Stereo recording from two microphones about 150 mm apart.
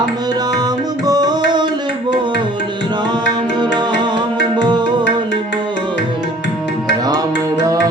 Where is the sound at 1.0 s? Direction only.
25° right (ahead or behind).